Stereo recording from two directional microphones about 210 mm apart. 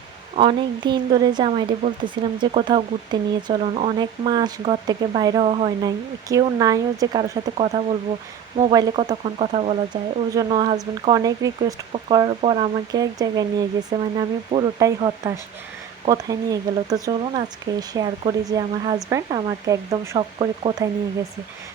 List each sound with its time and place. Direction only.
0.3 s a woman's voice: 25° right (ahead or behind)
6.2 s a woman's voice: 15° right (ahead or behind)